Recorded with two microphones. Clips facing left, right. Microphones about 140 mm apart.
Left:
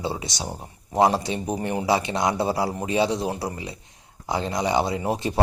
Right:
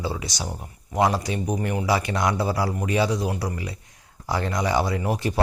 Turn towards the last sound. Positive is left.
turn(degrees=25)  # may be behind; listen again after turning